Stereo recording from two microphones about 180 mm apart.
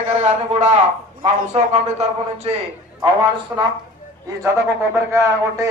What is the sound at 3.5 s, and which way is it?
Speech, 10° right (ahead or behind).